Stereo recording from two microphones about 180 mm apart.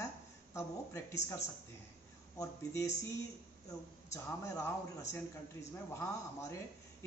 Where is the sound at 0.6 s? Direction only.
15° left (ahead or behind).